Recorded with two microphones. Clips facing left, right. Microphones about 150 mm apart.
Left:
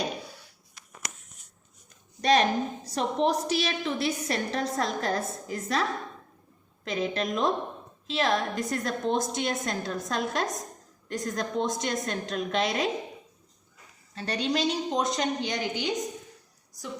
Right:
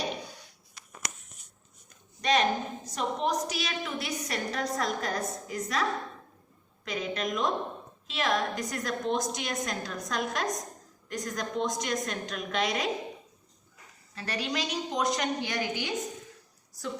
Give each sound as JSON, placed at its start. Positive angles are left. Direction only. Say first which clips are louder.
{"t": 2.2, "sound": "a woman's voice", "louder": "left 3 dB", "side_deg": 35}
{"t": 6.8, "sound": "a woman's voice", "louder": "left 3 dB", "side_deg": 30}
{"t": 14.2, "sound": "a woman's voice", "louder": "left 5 dB", "side_deg": 25}